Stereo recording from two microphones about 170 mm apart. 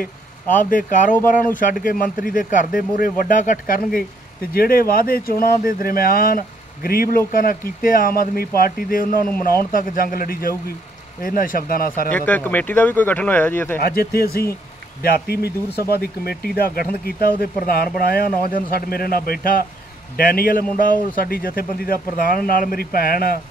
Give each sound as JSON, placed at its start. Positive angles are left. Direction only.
{"t": 0.6, "sound": "speech", "side_deg": 50}
{"t": 12.1, "sound": "speech", "side_deg": 10}
{"t": 13.7, "sound": "speech", "side_deg": 65}